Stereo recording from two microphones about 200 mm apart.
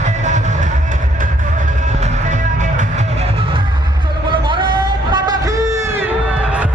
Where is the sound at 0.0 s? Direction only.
35° right (ahead or behind).